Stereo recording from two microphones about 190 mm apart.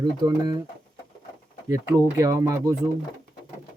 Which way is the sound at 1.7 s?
15° right (ahead or behind).